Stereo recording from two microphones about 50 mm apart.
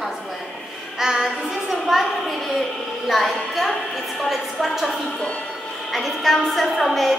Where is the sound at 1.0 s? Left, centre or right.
Centre.